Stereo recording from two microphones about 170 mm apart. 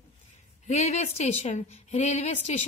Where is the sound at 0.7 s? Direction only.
40° left (ahead or behind).